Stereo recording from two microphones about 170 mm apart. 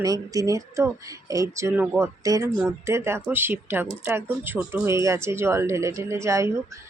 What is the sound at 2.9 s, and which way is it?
Speech, 15° right (ahead or behind).